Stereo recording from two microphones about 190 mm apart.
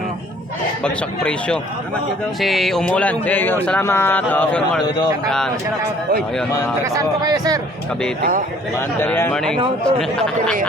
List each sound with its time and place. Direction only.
0.9 s speech: 5° left (ahead or behind)
6.9 s speech: 20° right (ahead or behind)
8.2 s speech: 45° right (ahead or behind)
9.0 s speech: 10° left (ahead or behind)